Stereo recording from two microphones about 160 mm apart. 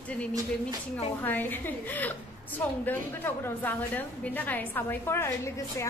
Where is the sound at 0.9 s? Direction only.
10° left (ahead or behind).